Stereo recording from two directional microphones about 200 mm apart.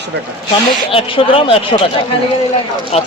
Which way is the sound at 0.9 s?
25° left (ahead or behind).